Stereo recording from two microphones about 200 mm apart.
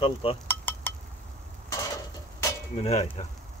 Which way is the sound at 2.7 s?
35° left (ahead or behind).